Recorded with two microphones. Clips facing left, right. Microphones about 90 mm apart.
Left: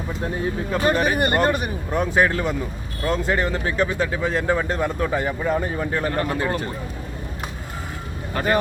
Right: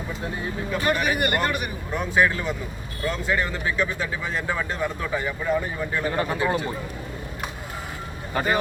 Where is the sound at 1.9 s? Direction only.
45° left (ahead or behind).